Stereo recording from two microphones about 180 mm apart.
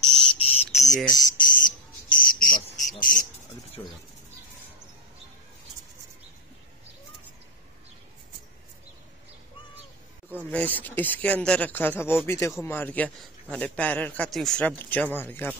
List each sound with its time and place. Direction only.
0.1 s cricket: 30° left (ahead or behind); by 2.6 s 50° left (ahead or behind)
3.0 s bird: 50° left (ahead or behind)
10.5 s a man's voice: 10° left (ahead or behind)